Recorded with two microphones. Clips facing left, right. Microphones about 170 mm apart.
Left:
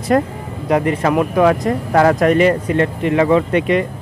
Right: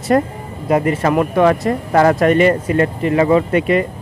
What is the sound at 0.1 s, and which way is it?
Speech, centre (ahead or behind).